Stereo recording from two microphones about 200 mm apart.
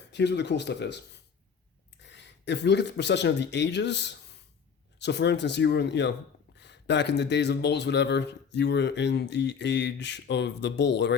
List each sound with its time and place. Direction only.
0.1 s speech: 60° left (ahead or behind)